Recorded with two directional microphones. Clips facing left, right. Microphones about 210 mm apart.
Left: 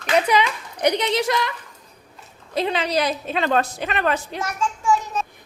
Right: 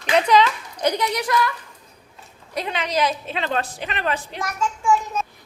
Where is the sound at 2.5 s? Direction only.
30° left (ahead or behind).